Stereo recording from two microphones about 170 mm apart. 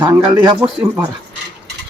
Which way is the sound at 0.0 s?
20° right (ahead or behind).